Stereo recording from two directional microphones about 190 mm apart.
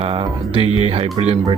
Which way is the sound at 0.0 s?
30° right (ahead or behind).